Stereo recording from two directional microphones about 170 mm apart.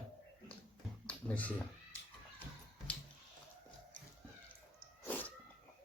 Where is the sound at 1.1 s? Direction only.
10° left (ahead or behind).